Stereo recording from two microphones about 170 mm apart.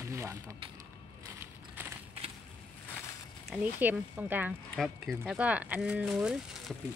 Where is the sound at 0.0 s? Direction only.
15° right (ahead or behind).